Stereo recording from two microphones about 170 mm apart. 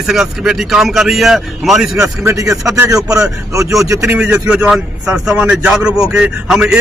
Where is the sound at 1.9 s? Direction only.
20° right (ahead or behind).